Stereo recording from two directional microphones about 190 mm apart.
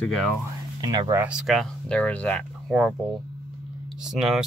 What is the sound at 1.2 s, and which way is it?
Speech, 5° right (ahead or behind).